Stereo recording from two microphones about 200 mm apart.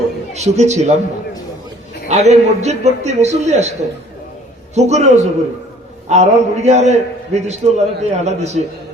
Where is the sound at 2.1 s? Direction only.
35° right (ahead or behind).